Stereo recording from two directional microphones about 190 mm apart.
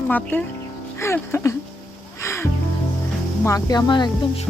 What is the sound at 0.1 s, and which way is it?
Speech, 10° left (ahead or behind).